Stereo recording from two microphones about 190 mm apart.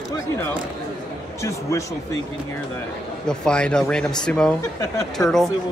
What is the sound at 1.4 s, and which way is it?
Speech, 15° left (ahead or behind).